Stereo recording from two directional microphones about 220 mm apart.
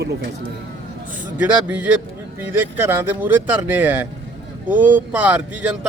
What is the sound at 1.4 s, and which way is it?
Speech, 5° right (ahead or behind).